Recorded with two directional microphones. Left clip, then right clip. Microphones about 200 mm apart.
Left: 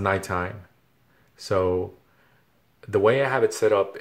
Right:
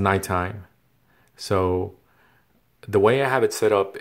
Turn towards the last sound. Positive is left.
turn(degrees=-25)  # may be behind; listen again after turning